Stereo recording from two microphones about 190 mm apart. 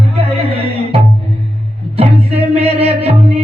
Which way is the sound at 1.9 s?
30° right (ahead or behind).